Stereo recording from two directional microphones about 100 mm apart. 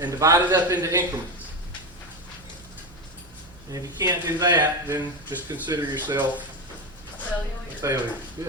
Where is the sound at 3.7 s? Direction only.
40° right (ahead or behind).